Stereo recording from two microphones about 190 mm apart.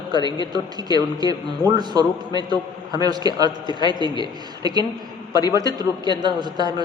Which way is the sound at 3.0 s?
20° right (ahead or behind).